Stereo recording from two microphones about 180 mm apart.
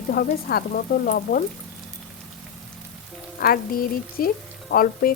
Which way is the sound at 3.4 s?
55° left (ahead or behind).